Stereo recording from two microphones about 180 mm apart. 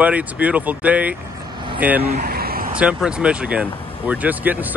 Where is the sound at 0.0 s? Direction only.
5° right (ahead or behind).